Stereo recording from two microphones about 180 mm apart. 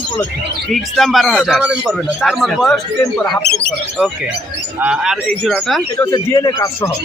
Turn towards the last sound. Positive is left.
turn(degrees=20)  # may be behind; listen again after turning